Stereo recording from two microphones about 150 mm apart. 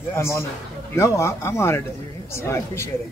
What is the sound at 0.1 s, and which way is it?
A woman's voice, 15° left (ahead or behind).